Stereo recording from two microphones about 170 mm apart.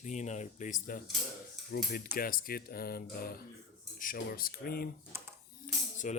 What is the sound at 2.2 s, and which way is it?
Speech, 55° left (ahead or behind).